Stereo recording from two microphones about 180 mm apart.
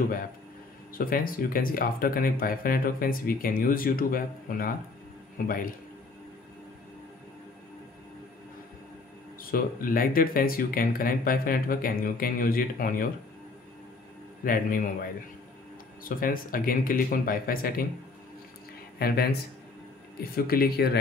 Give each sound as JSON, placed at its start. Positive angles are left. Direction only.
{"t": 0.9, "sound": "speech", "side_deg": 50}
{"t": 9.4, "sound": "speech", "side_deg": 55}
{"t": 14.4, "sound": "speech", "side_deg": 50}
{"t": 18.9, "sound": "speech", "side_deg": 60}
{"t": 20.2, "sound": "speech", "side_deg": 55}